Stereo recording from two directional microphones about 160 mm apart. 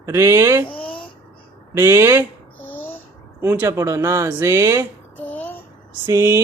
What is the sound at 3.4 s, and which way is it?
Speech, 15° right (ahead or behind).